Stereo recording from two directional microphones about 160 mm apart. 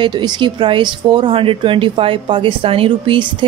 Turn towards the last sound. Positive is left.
turn(degrees=-30)  # may be behind; listen again after turning